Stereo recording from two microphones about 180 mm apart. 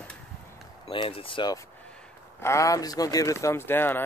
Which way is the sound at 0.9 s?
30° left (ahead or behind).